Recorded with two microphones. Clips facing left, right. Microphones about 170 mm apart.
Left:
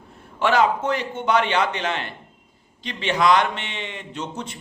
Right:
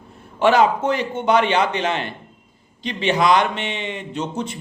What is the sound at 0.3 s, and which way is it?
A man's voice, 20° right (ahead or behind).